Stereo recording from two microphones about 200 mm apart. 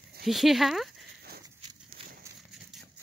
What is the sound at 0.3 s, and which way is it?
Speech, centre (ahead or behind).